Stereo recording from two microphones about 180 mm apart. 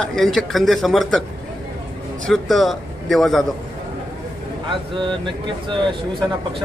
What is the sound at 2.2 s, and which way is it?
Speech, centre (ahead or behind).